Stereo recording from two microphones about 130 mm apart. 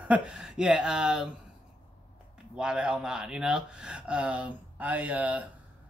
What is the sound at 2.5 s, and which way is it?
Speech, 5° right (ahead or behind).